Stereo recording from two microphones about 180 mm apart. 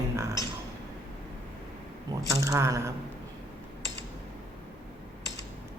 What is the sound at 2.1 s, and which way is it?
Speech, 20° right (ahead or behind).